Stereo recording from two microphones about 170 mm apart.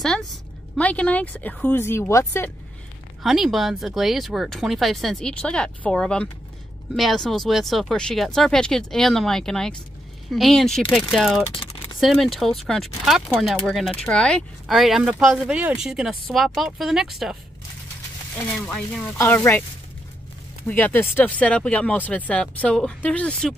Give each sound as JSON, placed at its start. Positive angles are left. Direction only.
{"t": 0.7, "sound": "speech", "side_deg": 5}
{"t": 3.2, "sound": "speech", "side_deg": 0}
{"t": 11.5, "sound": "typing", "side_deg": 30}
{"t": 12.0, "sound": "speech", "side_deg": 0}
{"t": 18.4, "sound": "speech", "side_deg": 10}
{"t": 20.6, "sound": "speech", "side_deg": 10}